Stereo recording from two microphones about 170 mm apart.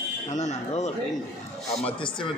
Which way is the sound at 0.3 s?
45° left (ahead or behind).